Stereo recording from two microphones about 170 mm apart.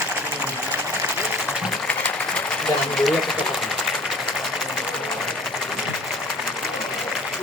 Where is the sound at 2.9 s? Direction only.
Centre (ahead or behind).